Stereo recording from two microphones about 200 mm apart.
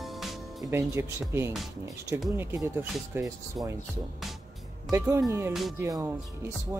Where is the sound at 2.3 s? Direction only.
15° right (ahead or behind).